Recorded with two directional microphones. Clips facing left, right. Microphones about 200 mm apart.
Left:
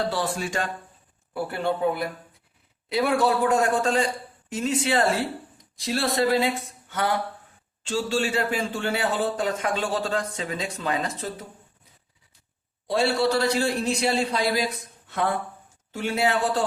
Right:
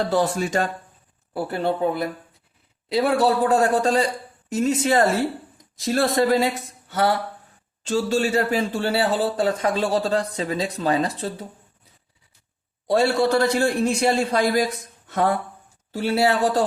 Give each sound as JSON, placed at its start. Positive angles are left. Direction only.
{"t": 0.1, "sound": "a man's voice", "side_deg": -45}
{"t": 12.9, "sound": "a man's voice", "side_deg": -45}
{"t": 15.9, "sound": "a man's voice", "side_deg": -35}